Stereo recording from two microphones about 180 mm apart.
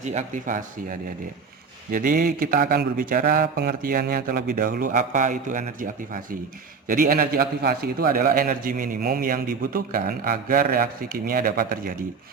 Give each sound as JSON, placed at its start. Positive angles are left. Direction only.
{"t": 0.0, "sound": "a man's voice", "side_deg": -40}